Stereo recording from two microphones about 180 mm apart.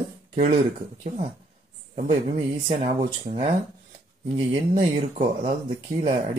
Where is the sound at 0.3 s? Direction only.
35° right (ahead or behind).